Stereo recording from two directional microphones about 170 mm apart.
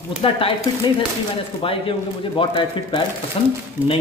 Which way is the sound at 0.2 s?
35° left (ahead or behind).